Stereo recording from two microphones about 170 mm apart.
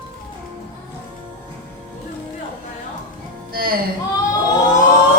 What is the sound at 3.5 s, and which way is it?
Music, 60° right (ahead or behind).